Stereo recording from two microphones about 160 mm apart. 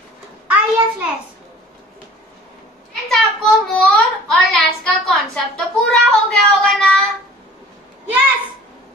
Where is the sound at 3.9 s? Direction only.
Centre (ahead or behind).